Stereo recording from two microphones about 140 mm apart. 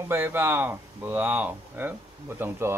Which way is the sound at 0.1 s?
15° right (ahead or behind).